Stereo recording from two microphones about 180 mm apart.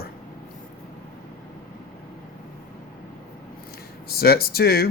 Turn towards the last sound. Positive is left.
turn(degrees=60)  # may be behind; listen again after turning